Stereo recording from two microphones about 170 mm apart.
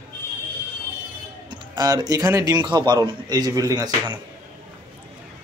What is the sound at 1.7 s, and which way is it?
Speech, 20° right (ahead or behind).